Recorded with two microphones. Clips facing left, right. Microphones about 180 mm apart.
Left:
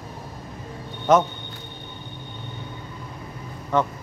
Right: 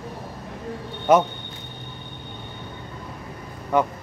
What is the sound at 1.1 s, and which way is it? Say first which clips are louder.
Speech: right 1 dB; 10° right (ahead or behind).